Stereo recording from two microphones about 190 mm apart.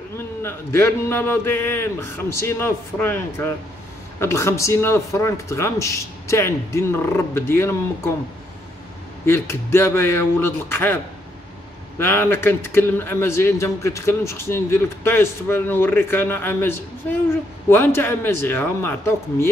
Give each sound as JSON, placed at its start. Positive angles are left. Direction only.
{"t": 0.4, "sound": "speech", "side_deg": 15}
{"t": 9.2, "sound": "speech", "side_deg": 15}
{"t": 12.0, "sound": "speech", "side_deg": 10}